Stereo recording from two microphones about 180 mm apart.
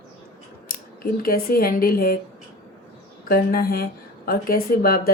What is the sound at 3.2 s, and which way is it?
A woman's voice, 55° left (ahead or behind).